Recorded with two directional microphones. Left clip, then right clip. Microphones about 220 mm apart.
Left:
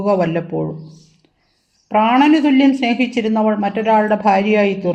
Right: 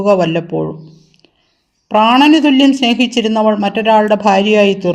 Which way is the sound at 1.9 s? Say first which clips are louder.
Right 4 dB; 40° right (ahead or behind).